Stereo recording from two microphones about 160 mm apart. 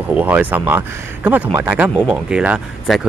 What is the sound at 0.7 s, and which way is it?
Speech, 10° right (ahead or behind).